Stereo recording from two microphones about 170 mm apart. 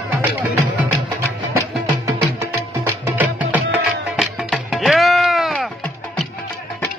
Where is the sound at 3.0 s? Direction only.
10° right (ahead or behind).